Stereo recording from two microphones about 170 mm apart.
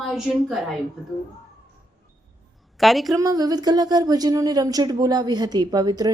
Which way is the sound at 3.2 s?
20° right (ahead or behind).